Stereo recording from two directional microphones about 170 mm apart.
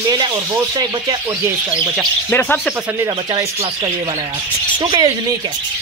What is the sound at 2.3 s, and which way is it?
Speech, 10° left (ahead or behind).